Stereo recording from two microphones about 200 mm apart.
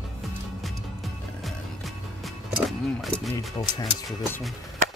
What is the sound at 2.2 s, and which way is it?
Speech, centre (ahead or behind).